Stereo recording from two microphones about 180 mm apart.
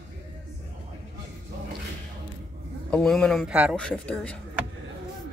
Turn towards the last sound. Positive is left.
turn(degrees=5)  # may be behind; listen again after turning